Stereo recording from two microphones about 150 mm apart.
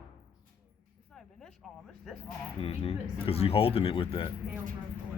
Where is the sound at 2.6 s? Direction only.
40° left (ahead or behind).